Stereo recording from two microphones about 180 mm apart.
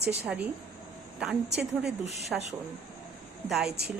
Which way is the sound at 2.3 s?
Centre (ahead or behind).